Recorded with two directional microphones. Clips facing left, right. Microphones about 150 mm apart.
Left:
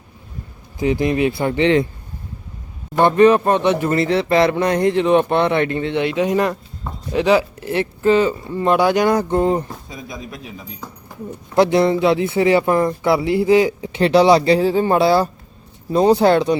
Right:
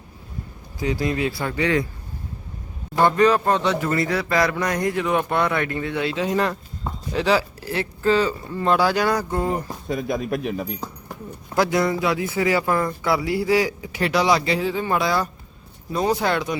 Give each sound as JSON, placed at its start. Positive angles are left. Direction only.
{"t": 0.8, "sound": "speech", "side_deg": 20}
{"t": 3.0, "sound": "speech", "side_deg": 20}
{"t": 9.9, "sound": "speech", "side_deg": -60}
{"t": 11.5, "sound": "speech", "side_deg": 25}